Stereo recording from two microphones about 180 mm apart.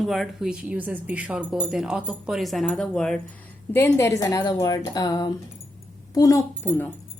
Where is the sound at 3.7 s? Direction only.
15° left (ahead or behind).